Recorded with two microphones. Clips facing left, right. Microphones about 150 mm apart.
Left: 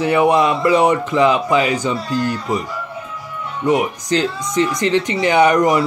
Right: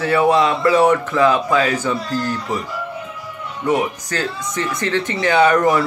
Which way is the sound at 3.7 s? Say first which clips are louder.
Left 3 dB; 15° left (ahead or behind).